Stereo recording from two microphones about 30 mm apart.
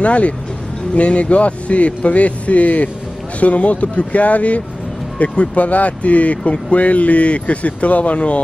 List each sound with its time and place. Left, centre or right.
0.0 s speech: left